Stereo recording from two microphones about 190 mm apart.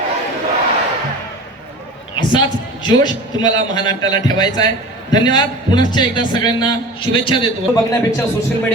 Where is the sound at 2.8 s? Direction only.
25° left (ahead or behind).